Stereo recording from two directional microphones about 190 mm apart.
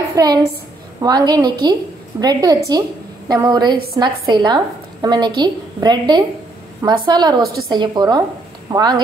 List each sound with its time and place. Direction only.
0.1 s a woman's voice: 20° right (ahead or behind)